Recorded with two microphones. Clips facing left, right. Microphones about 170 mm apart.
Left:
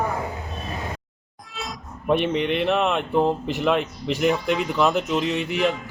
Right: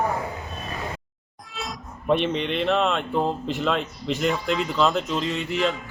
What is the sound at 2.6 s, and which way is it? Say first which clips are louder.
A man's voice: left 1 dB; 15° left (ahead or behind).